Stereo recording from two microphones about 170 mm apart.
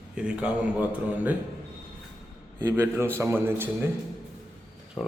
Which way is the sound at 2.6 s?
15° right (ahead or behind).